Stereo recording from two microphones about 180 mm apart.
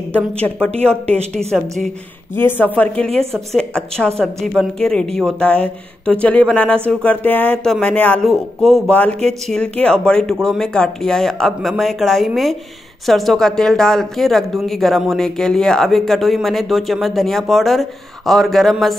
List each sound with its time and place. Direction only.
0.1 s speech: 5° left (ahead or behind)
0.7 s speech: 35° right (ahead or behind)
2.3 s speech: 10° left (ahead or behind)